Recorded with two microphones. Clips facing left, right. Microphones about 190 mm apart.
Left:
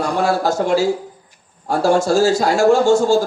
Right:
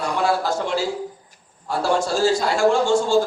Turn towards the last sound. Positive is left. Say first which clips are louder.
# left 5 dB
turn(degrees=40)  # may be behind; listen again after turning